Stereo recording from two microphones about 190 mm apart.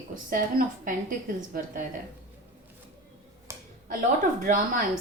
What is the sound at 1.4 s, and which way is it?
Speech, 45° right (ahead or behind).